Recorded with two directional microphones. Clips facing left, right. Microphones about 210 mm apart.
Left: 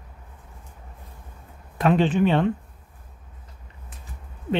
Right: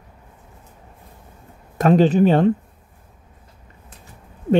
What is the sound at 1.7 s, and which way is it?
Speech, 40° right (ahead or behind).